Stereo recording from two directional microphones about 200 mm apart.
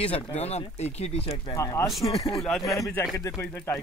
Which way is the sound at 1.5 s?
15° left (ahead or behind).